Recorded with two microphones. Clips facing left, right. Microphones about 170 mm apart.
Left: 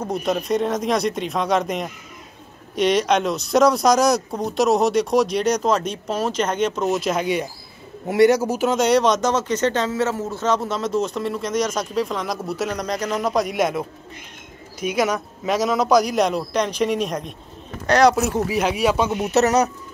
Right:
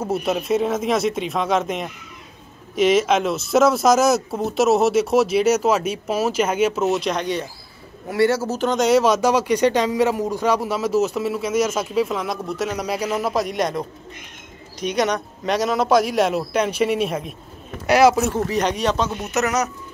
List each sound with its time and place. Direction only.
0.0 s speech: 5° right (ahead or behind)
8.1 s speech: 20° left (ahead or behind)
19.3 s speech: 35° left (ahead or behind)